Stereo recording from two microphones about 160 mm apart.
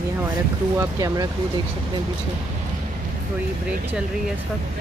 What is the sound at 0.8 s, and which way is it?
Speech, 25° right (ahead or behind).